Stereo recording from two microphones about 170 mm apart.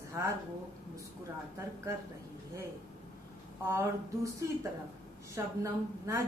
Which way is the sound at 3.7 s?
15° right (ahead or behind).